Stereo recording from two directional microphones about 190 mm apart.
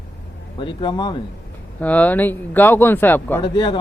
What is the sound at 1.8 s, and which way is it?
Speech, 10° left (ahead or behind).